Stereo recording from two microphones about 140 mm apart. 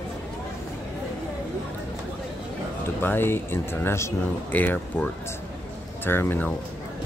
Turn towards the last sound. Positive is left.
turn(degrees=15)  # may be behind; listen again after turning